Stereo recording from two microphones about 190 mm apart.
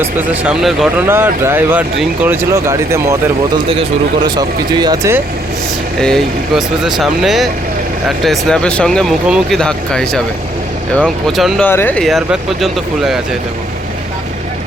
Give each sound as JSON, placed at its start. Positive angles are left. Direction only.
{"t": 0.0, "sound": "speech", "side_deg": -10}
{"t": 4.4, "sound": "speech", "side_deg": -20}
{"t": 6.0, "sound": "speech", "side_deg": 5}